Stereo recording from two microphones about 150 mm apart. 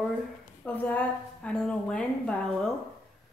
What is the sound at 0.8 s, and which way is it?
A woman's voice, 10° left (ahead or behind).